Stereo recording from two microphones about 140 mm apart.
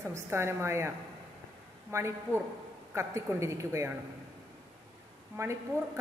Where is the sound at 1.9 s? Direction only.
20° right (ahead or behind).